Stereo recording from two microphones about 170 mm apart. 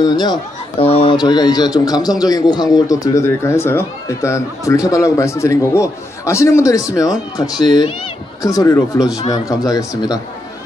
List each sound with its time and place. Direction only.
0.0 s a man's voice: 25° left (ahead or behind)